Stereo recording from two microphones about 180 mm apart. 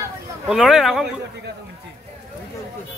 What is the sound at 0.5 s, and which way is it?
Speech, centre (ahead or behind).